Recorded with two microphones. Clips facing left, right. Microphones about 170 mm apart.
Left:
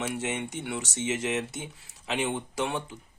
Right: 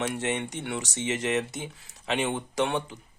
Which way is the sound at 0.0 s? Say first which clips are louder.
Right 2 dB; 5° left (ahead or behind).